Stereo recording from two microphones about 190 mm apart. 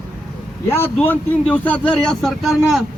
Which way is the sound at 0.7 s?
10° left (ahead or behind).